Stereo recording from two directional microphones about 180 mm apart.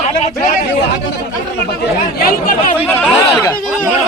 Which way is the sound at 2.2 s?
55° left (ahead or behind).